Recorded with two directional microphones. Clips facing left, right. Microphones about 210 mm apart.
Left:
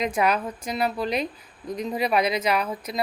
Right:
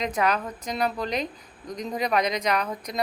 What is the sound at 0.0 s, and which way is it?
A woman's voice, 10° left (ahead or behind).